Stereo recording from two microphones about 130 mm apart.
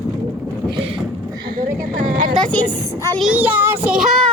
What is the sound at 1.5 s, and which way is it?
Speech, 90° right.